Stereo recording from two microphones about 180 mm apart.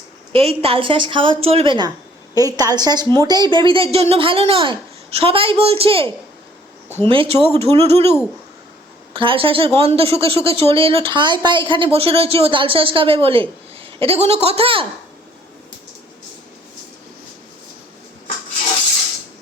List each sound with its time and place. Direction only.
0.3 s a woman's voice: 30° right (ahead or behind)
7.1 s speech: 30° right (ahead or behind)
9.1 s speech: 30° right (ahead or behind)